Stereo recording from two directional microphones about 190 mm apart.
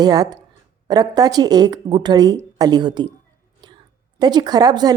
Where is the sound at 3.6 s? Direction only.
20° right (ahead or behind).